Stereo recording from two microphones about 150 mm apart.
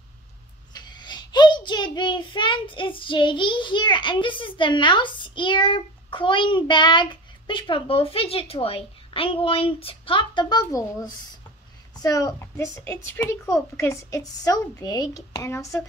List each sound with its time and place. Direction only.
0.7 s a child's voice: 30° left (ahead or behind)